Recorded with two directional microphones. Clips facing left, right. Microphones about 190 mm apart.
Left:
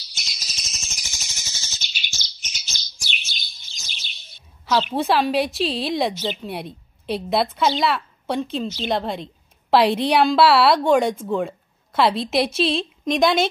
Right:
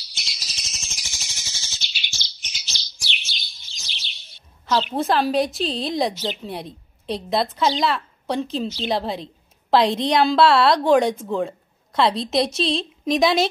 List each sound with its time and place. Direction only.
0.1 s bird: 45° left (ahead or behind)
4.9 s a woman's voice: centre (ahead or behind)